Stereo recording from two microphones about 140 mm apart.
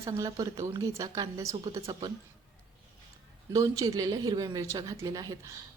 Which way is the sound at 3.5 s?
25° right (ahead or behind).